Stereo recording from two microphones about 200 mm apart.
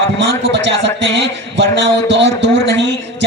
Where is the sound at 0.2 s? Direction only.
60° right (ahead or behind).